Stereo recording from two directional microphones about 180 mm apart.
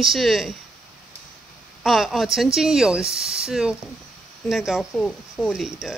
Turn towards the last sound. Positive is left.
turn(degrees=0)  # may be behind; listen again after turning